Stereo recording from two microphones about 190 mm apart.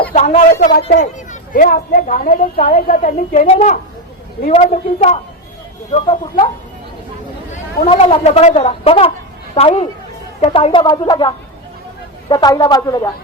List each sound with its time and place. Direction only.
0.1 s a woman's voice: 40° left (ahead or behind)
7.5 s speech: 30° left (ahead or behind)